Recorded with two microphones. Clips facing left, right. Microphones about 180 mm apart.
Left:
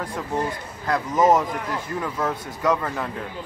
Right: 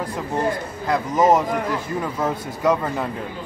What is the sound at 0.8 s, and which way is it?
Speech, 20° right (ahead or behind).